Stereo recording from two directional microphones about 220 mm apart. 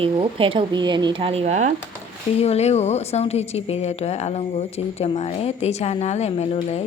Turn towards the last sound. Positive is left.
turn(degrees=30)  # may be behind; listen again after turning